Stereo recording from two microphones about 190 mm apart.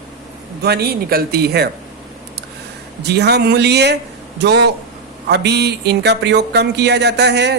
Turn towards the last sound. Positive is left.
turn(degrees=-60)  # may be behind; listen again after turning